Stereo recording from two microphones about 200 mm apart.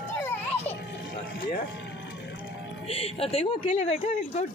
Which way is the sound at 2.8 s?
30° left (ahead or behind).